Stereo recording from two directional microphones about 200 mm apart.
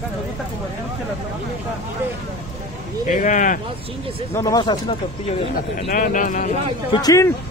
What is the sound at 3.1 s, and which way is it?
Speech, 40° left (ahead or behind).